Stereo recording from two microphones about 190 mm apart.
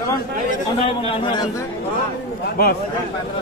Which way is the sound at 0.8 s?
25° left (ahead or behind).